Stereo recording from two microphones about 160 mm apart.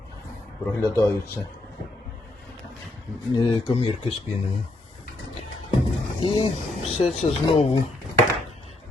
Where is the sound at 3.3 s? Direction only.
25° left (ahead or behind).